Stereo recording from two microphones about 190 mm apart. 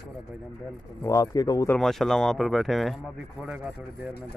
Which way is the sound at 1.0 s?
15° left (ahead or behind).